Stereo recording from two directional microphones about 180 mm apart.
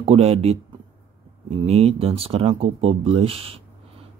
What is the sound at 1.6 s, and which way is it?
Speech, 35° right (ahead or behind).